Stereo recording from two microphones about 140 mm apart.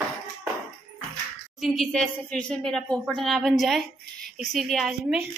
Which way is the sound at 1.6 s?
Centre (ahead or behind).